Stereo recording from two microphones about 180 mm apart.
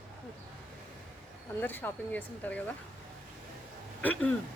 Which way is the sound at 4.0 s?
10° left (ahead or behind).